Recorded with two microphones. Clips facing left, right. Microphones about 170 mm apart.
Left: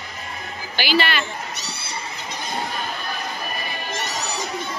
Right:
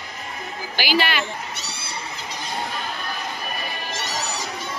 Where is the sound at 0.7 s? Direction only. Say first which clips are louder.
Left 1 dB; 10° right (ahead or behind).